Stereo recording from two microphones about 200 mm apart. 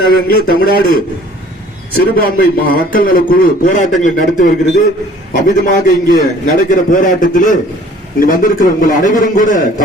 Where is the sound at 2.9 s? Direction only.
45° left (ahead or behind).